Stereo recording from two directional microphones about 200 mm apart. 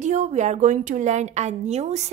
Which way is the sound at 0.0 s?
35° right (ahead or behind).